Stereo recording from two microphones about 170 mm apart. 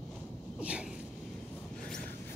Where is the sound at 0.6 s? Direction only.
10° right (ahead or behind).